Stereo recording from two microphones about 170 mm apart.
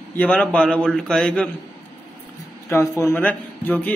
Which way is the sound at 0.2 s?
10° left (ahead or behind).